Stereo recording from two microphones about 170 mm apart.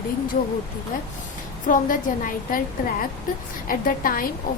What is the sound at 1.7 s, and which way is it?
A woman's voice, 55° left (ahead or behind).